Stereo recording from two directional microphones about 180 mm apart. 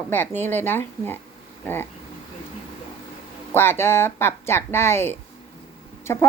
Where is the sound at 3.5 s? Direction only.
15° left (ahead or behind).